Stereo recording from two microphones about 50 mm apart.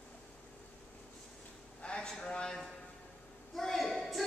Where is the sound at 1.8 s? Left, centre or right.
Centre.